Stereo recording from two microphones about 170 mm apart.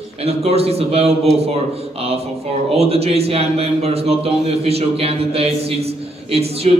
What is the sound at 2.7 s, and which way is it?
A man's voice, 35° right (ahead or behind).